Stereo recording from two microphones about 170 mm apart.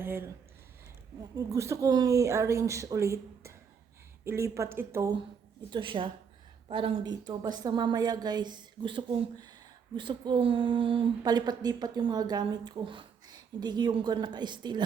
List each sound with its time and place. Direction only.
0.0 s speech: 15° right (ahead or behind)
1.4 s speech: 20° right (ahead or behind)
5.7 s a woman's voice: 30° right (ahead or behind)